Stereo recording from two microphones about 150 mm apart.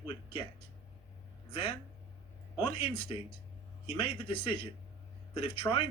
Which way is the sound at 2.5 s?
35° left (ahead or behind).